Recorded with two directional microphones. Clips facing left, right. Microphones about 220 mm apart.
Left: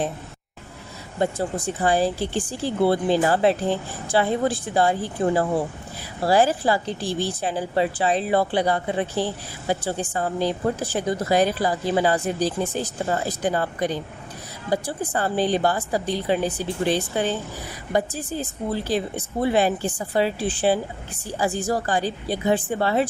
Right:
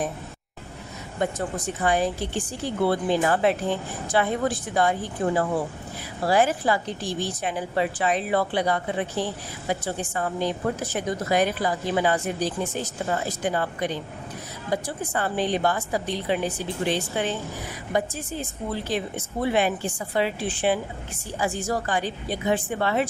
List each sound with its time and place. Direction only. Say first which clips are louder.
1.2 s speech: left 3 dB; 30° left (ahead or behind)